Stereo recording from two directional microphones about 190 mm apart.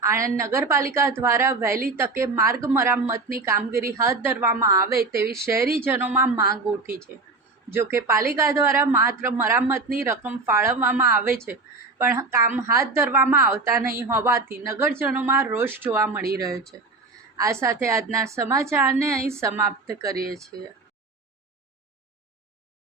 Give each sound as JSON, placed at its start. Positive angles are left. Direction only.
{"t": 0.0, "sound": "a woman's voice", "side_deg": -15}
{"t": 7.7, "sound": "a woman's voice", "side_deg": -10}